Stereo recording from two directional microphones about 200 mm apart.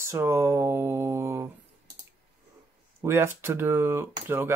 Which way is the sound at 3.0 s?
10° right (ahead or behind).